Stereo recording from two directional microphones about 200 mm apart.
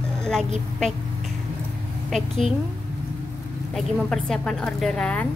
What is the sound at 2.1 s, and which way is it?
Speech, centre (ahead or behind).